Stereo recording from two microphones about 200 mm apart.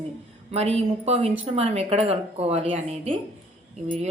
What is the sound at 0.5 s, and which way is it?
A woman's voice, 30° right (ahead or behind).